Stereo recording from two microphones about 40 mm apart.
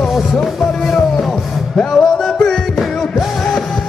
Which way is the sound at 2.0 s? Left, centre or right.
Centre.